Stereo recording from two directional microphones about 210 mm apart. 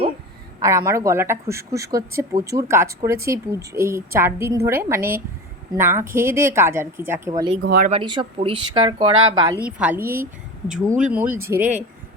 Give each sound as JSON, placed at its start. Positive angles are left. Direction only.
{"t": 0.6, "sound": "speech", "side_deg": -15}
{"t": 7.6, "sound": "speech", "side_deg": -50}
{"t": 7.9, "sound": "speech", "side_deg": -25}
{"t": 9.6, "sound": "speech", "side_deg": -5}